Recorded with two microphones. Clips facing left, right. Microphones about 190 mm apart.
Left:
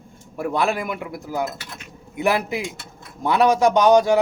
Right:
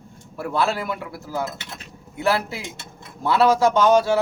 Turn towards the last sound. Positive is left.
turn(degrees=15)  # may be behind; listen again after turning